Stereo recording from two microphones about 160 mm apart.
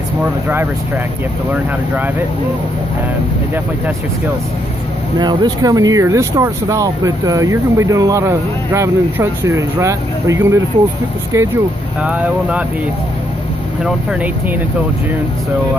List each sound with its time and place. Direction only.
0.2 s speech: 10° right (ahead or behind)
5.2 s speech: 25° right (ahead or behind)
12.0 s speech: 5° right (ahead or behind)
13.8 s speech: 10° right (ahead or behind)